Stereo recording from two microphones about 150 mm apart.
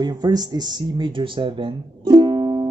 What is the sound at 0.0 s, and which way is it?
Speech, 25° right (ahead or behind).